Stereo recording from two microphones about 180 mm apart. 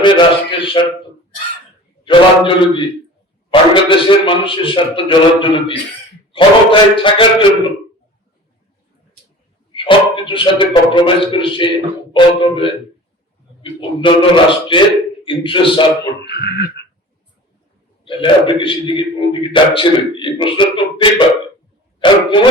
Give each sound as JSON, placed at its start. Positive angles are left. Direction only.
{"t": 0.0, "sound": "a sound", "side_deg": 25}
{"t": 2.0, "sound": "a man's voice", "side_deg": 30}
{"t": 9.7, "sound": "a man's voice", "side_deg": 30}
{"t": 16.2, "sound": "speech", "side_deg": 65}
{"t": 18.0, "sound": "a man's voice", "side_deg": 30}